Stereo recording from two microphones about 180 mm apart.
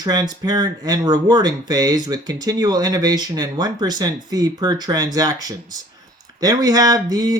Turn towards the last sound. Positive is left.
turn(degrees=-20)  # may be behind; listen again after turning